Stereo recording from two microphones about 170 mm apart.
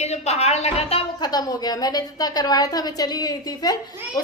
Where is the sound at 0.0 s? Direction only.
40° left (ahead or behind).